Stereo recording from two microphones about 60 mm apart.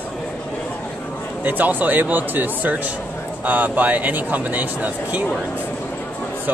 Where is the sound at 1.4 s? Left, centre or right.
Right.